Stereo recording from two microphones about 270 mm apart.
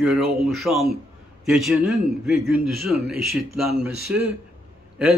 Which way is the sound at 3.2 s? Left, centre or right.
Right.